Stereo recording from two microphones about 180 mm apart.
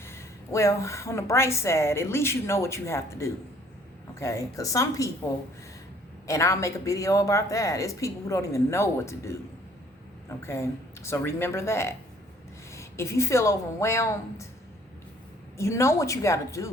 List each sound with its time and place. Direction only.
0.0 s a woman's voice: 15° left (ahead or behind)
6.2 s a woman's voice: 15° left (ahead or behind)
15.5 s a woman's voice: 15° left (ahead or behind)